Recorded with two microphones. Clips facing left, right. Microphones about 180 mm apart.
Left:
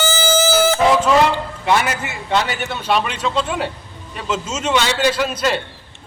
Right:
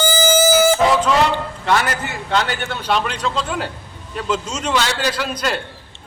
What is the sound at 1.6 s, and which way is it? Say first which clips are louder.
A man's voice: left 1 dB; 10° left (ahead or behind).